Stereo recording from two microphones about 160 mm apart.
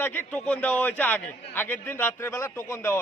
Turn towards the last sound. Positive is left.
turn(degrees=15)  # may be behind; listen again after turning